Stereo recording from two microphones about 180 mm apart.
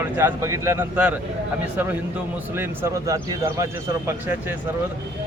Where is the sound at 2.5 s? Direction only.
15° right (ahead or behind).